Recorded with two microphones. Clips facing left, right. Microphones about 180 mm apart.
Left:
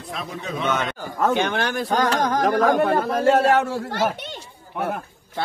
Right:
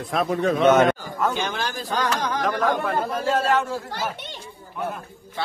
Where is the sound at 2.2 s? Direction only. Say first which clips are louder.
Left 5 dB; 45° left (ahead or behind).